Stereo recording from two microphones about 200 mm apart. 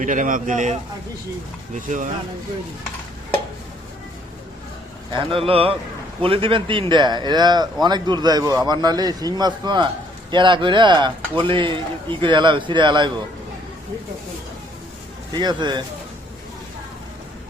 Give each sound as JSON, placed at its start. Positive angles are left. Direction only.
{"t": 0.0, "sound": "a man's voice", "side_deg": -40}
{"t": 5.1, "sound": "a man's voice", "side_deg": -25}
{"t": 15.4, "sound": "a man's voice", "side_deg": -20}